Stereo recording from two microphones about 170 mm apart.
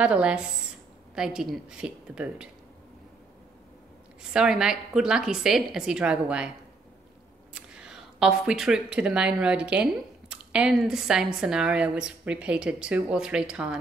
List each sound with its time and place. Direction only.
0.0 s a woman's voice: 5° right (ahead or behind)
4.2 s a woman's voice: 5° right (ahead or behind)
7.5 s a woman's voice: 5° right (ahead or behind)